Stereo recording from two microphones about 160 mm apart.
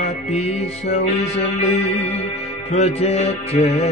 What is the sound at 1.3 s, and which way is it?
Music, 40° left (ahead or behind).